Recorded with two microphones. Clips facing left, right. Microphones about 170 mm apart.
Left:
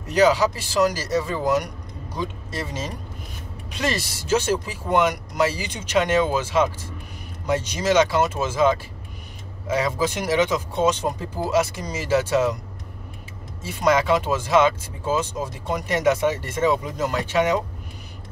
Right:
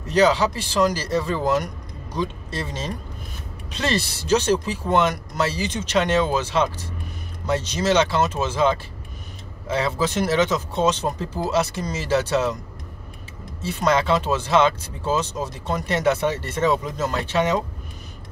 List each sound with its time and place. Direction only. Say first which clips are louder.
0.1 s speech: even; 10° left (ahead or behind)
13.6 s speech: left 1 dB; 10° left (ahead or behind)